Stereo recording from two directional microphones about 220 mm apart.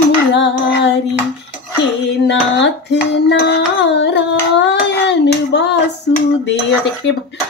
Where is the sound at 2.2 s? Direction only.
50° left (ahead or behind).